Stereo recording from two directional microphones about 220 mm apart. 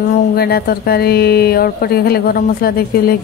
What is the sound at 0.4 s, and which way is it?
Speech, 45° left (ahead or behind).